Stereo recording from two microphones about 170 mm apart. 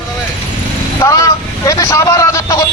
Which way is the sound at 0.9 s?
20° left (ahead or behind).